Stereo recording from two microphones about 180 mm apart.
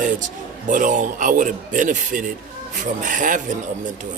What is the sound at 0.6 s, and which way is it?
Speech, 45° right (ahead or behind).